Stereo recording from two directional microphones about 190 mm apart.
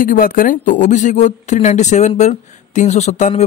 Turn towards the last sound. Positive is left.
turn(degrees=40)  # may be behind; listen again after turning